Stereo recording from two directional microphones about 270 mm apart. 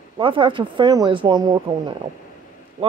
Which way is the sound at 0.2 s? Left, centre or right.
Centre.